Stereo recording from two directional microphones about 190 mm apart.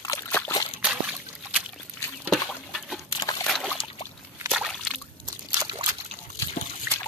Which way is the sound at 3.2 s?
20° left (ahead or behind).